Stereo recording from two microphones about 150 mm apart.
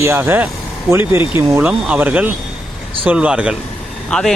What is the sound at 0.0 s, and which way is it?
Speech, 15° right (ahead or behind).